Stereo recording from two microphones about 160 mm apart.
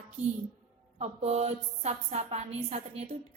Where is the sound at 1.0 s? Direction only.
40° right (ahead or behind).